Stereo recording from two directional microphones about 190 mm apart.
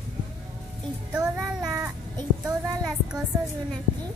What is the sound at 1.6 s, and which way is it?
Speech, 20° right (ahead or behind).